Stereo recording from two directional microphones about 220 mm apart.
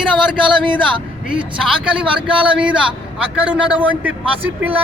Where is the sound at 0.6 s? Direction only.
20° right (ahead or behind).